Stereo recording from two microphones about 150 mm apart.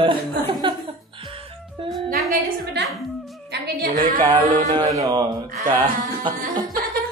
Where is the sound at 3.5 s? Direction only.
70° right (ahead or behind).